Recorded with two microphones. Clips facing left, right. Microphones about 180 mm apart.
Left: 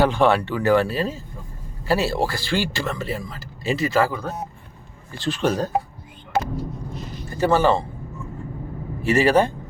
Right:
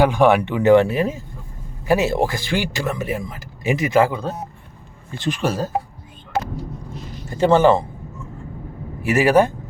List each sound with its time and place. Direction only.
0.0 s speech: 15° right (ahead or behind)
7.3 s speech: 20° right (ahead or behind)
9.0 s speech: 10° right (ahead or behind)